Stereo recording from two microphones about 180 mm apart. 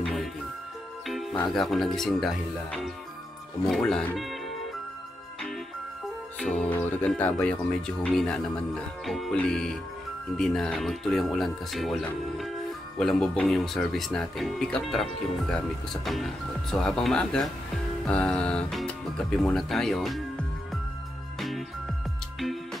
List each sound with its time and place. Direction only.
0.0 s music: centre (ahead or behind)
1.5 s speech: centre (ahead or behind)
6.4 s speech: 5° left (ahead or behind)
21.4 s music: centre (ahead or behind)